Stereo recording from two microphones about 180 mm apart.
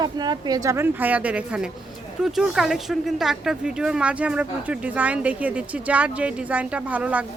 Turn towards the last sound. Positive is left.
turn(degrees=-10)  # may be behind; listen again after turning